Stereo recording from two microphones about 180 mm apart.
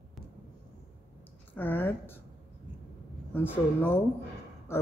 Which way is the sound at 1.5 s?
10° left (ahead or behind).